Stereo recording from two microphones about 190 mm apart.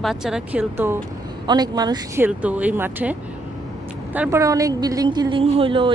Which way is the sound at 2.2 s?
5° right (ahead or behind).